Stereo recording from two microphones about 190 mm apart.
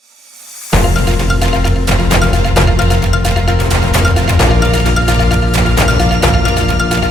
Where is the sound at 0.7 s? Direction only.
Centre (ahead or behind).